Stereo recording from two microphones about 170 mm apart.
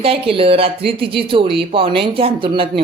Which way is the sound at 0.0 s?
35° right (ahead or behind).